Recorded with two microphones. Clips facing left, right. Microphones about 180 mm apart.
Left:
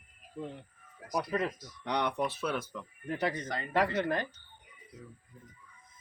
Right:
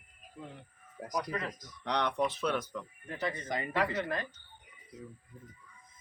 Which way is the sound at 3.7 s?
55° left (ahead or behind).